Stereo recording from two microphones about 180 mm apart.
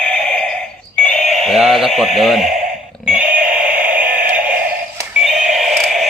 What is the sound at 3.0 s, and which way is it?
Synthetic singing, 5° right (ahead or behind).